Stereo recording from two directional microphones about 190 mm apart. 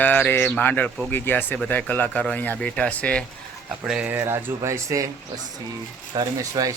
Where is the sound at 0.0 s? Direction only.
10° left (ahead or behind).